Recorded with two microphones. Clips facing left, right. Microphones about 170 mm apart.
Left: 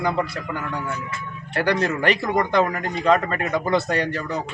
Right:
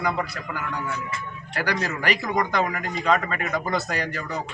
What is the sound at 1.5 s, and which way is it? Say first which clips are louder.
Speech: left 6 dB; 25° left (ahead or behind).